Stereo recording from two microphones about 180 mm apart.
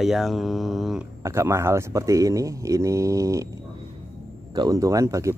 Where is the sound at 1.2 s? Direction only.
15° right (ahead or behind).